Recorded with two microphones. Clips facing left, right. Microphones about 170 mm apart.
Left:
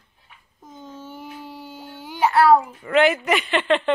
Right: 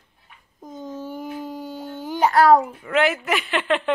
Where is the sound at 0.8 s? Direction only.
40° right (ahead or behind).